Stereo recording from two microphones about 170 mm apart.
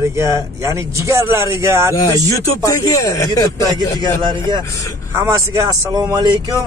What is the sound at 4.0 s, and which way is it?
Speech, 25° right (ahead or behind).